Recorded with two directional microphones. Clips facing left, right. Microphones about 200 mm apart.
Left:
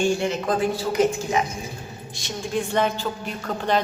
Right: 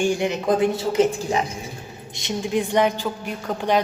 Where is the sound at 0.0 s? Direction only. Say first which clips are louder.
Right 1 dB; 15° right (ahead or behind).